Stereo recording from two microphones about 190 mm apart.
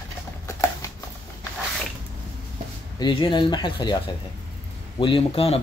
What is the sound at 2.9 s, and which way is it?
Speech, 25° left (ahead or behind).